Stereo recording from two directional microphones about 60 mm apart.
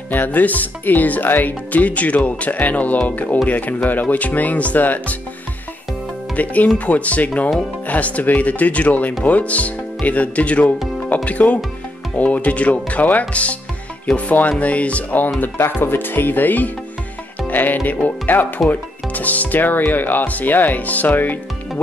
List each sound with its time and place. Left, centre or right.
0.1 s speech: left
6.3 s speech: left
15.4 s speech: left